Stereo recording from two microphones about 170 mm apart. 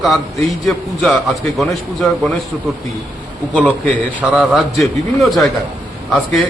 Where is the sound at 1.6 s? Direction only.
Centre (ahead or behind).